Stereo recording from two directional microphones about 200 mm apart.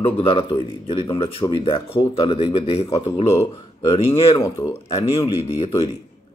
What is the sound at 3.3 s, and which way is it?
Speech, 15° left (ahead or behind).